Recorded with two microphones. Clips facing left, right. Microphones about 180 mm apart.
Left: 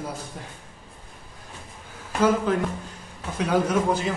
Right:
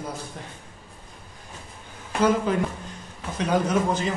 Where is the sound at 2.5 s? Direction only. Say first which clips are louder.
Left 1 dB; centre (ahead or behind).